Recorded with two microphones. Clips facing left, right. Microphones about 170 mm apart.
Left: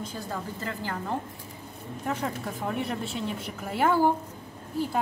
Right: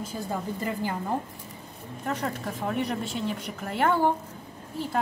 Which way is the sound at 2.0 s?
5° left (ahead or behind).